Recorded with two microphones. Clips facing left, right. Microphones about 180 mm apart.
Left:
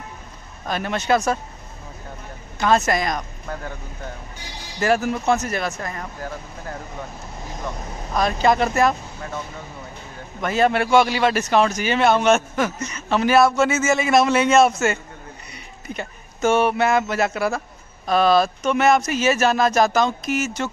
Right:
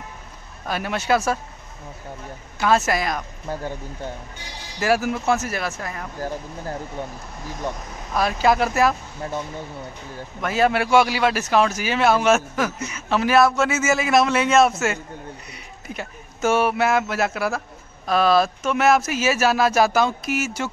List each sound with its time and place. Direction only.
0.7 s speech: 5° right (ahead or behind)
2.6 s a man's voice: 5° right (ahead or behind)
3.4 s speech: 25° right (ahead or behind)
4.7 s a man's voice: 5° right (ahead or behind)
6.2 s speech: 30° right (ahead or behind)
8.1 s a man's voice: 5° right (ahead or behind)
10.4 s a man's voice: 5° right (ahead or behind)